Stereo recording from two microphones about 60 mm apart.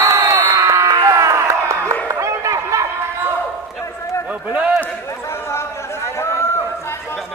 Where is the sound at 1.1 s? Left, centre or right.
Right.